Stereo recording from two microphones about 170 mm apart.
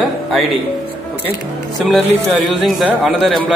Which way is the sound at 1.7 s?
Centre (ahead or behind).